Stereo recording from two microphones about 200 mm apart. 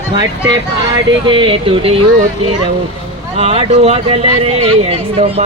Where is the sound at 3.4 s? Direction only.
30° right (ahead or behind).